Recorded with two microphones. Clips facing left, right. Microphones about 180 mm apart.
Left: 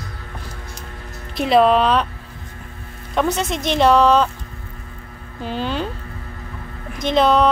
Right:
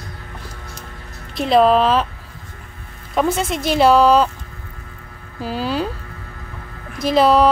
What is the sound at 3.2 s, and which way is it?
Speech, 5° right (ahead or behind).